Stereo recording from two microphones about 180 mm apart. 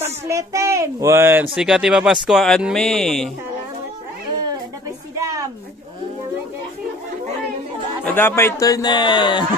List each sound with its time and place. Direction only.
0.0 s a child's voice: 15° right (ahead or behind); by 3.3 s centre (ahead or behind)
5.2 s a sound: 20° right (ahead or behind)
8.0 s a man's voice: 10° left (ahead or behind)